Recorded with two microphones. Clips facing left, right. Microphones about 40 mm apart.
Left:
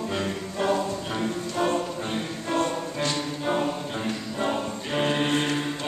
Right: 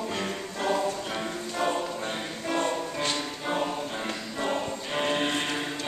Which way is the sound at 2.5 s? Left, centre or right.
Right.